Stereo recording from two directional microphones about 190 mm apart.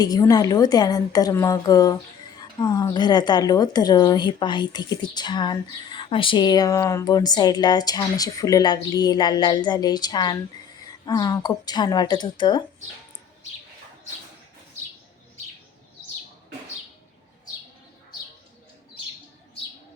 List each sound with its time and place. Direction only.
0.0 s speech: 20° left (ahead or behind)